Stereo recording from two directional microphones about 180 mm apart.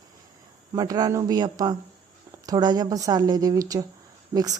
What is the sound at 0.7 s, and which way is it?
A woman's voice, 20° right (ahead or behind).